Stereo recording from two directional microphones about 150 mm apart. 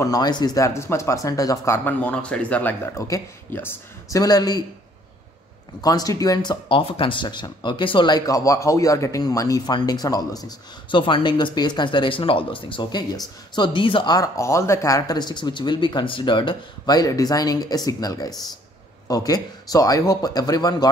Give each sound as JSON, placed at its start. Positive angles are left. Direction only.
{"t": 0.0, "sound": "speech", "side_deg": 25}
{"t": 5.8, "sound": "speech", "side_deg": 25}